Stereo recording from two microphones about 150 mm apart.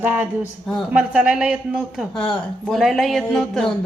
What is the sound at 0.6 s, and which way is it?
Speech, 5° left (ahead or behind).